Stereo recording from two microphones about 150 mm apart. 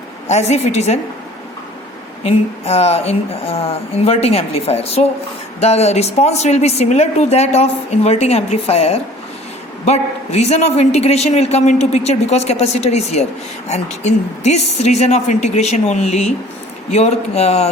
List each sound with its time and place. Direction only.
0.3 s a man's voice: 50° left (ahead or behind)
2.2 s a man's voice: 45° left (ahead or behind)